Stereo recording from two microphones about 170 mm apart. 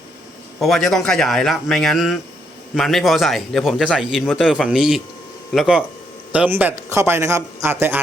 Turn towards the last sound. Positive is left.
turn(degrees=-10)  # may be behind; listen again after turning